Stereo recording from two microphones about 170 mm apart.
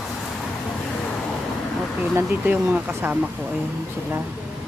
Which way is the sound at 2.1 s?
10° right (ahead or behind).